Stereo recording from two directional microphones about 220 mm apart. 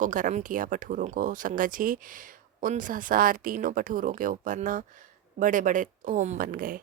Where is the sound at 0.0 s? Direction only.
35° right (ahead or behind).